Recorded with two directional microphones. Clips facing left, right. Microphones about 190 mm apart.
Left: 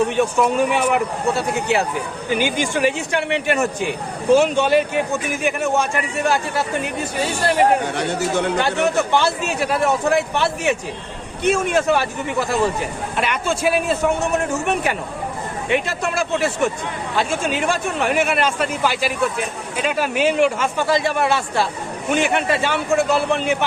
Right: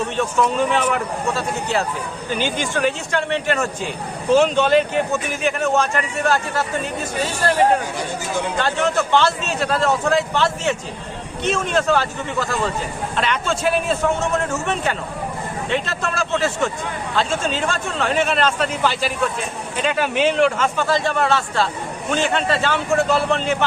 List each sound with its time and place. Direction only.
0.2 s a man's voice: 10° left (ahead or behind)
7.8 s speech: 70° left (ahead or behind)
8.5 s a man's voice: 15° left (ahead or behind)